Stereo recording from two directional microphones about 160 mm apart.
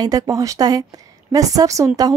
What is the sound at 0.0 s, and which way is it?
Speech, 20° right (ahead or behind).